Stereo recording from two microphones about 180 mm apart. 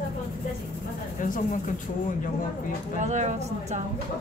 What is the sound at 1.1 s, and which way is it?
Speech, 45° left (ahead or behind).